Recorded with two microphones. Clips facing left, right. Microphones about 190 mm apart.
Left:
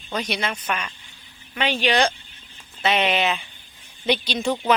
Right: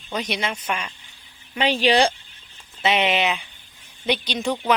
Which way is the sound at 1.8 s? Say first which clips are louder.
Right 3 dB; 30° right (ahead or behind).